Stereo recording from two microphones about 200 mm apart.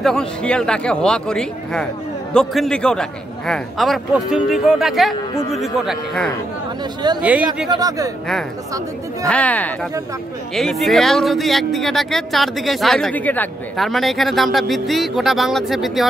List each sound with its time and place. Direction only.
0.0 s speech: 5° left (ahead or behind)
7.7 s speech: 15° right (ahead or behind)
9.3 s speech: 5° left (ahead or behind)